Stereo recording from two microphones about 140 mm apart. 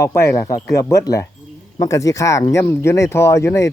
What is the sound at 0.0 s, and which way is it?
Speech, 20° left (ahead or behind).